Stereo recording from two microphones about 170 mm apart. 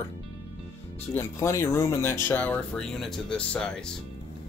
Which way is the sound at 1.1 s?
15° left (ahead or behind).